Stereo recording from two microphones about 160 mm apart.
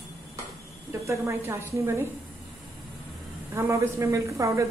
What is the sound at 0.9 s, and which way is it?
A woman's voice, 20° right (ahead or behind).